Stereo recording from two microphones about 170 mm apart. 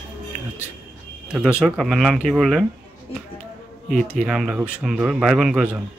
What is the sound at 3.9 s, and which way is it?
Speech, 5° left (ahead or behind).